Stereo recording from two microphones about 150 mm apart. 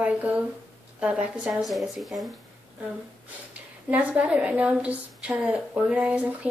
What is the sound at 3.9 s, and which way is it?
A woman's voice, 5° right (ahead or behind).